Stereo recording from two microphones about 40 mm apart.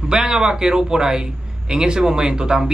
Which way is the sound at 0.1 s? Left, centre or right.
Centre.